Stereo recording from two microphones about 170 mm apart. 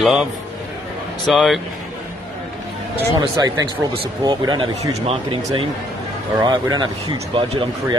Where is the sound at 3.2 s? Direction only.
25° right (ahead or behind).